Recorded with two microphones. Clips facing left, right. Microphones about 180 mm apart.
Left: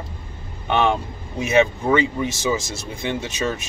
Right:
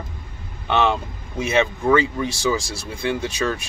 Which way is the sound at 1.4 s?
15° left (ahead or behind).